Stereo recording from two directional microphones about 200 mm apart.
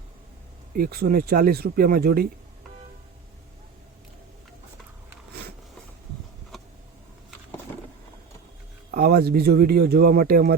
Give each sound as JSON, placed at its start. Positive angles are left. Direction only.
{"t": 0.8, "sound": "speech", "side_deg": -50}
{"t": 8.9, "sound": "speech", "side_deg": -50}